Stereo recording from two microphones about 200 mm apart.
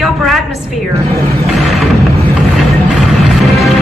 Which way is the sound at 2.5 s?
Centre (ahead or behind).